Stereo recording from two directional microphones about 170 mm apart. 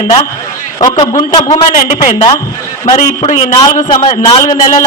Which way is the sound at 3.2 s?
40° left (ahead or behind).